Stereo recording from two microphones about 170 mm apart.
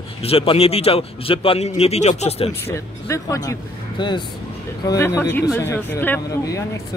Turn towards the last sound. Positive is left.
turn(degrees=15)  # may be behind; listen again after turning